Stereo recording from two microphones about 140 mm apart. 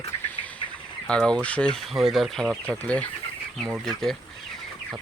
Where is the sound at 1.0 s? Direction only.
5° left (ahead or behind).